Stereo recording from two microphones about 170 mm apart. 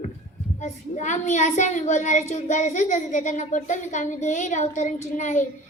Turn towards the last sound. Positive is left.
turn(degrees=45)  # may be behind; listen again after turning